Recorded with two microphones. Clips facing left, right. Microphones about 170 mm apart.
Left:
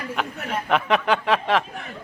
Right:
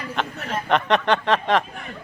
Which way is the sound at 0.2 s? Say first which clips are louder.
Right 2 dB; 5° left (ahead or behind).